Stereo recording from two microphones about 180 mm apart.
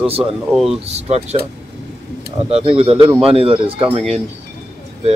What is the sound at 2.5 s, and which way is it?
Speech, 30° right (ahead or behind).